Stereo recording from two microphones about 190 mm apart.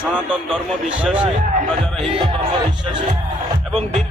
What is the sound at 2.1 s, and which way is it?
Speech, 25° right (ahead or behind).